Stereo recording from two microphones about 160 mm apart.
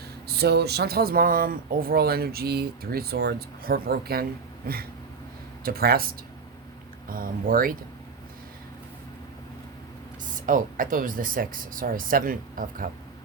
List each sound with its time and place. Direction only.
0.3 s speech: 85° right; by 7.8 s 60° right (ahead or behind)
10.3 s speech: 55° right (ahead or behind)